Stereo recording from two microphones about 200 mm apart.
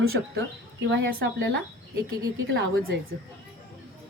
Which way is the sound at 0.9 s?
55° right (ahead or behind).